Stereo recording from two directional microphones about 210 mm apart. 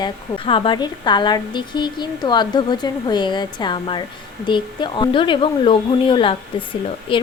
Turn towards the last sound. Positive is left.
turn(degrees=25)  # may be behind; listen again after turning